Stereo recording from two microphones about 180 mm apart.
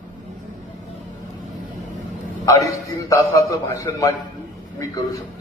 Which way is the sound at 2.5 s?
20° left (ahead or behind).